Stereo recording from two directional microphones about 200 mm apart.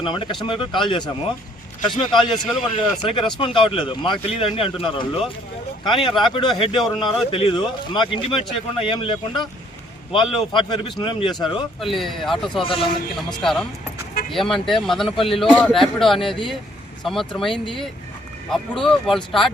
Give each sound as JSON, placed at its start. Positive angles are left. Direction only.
{"t": 0.0, "sound": "speech", "side_deg": 25}
{"t": 11.8, "sound": "a man's voice", "side_deg": 0}
{"t": 18.5, "sound": "a man's voice", "side_deg": 0}